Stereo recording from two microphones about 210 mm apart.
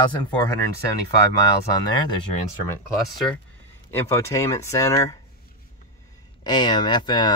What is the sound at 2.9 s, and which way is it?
Speech, centre (ahead or behind).